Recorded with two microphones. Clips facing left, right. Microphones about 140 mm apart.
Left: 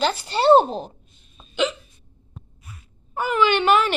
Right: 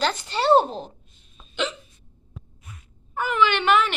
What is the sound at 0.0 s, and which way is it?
Speech, 10° left (ahead or behind).